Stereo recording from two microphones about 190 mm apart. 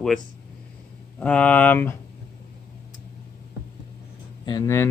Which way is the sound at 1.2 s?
5° left (ahead or behind).